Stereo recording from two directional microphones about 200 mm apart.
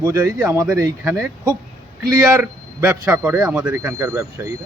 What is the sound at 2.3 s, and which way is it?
Speech, 10° right (ahead or behind).